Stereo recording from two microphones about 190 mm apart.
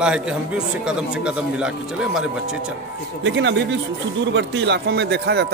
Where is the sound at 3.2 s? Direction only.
70° right (ahead or behind).